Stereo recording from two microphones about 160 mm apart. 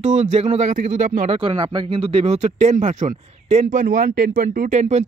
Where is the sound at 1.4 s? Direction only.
35° right (ahead or behind); by 5.0 s 50° right (ahead or behind).